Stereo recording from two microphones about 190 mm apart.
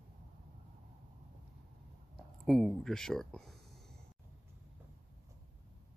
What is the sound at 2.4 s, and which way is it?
Speech, centre (ahead or behind).